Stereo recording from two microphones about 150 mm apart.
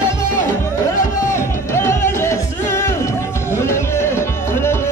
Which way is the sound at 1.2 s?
20° left (ahead or behind).